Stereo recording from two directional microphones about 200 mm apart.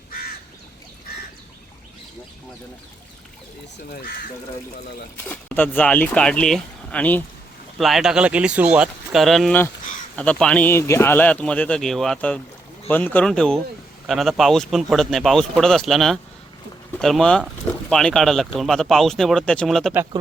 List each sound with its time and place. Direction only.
0.1 s crow: 50° left (ahead or behind)
3.8 s speech: 50° left (ahead or behind)
5.3 s speech: 5° left (ahead or behind)